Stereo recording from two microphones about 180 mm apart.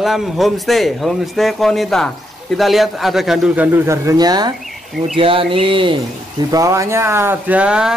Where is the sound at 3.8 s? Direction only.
20° right (ahead or behind).